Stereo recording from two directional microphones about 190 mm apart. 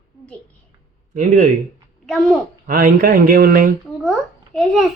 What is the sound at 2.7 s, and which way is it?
Speech, 50° right (ahead or behind).